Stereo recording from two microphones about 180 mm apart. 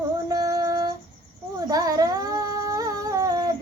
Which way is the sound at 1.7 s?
20° right (ahead or behind).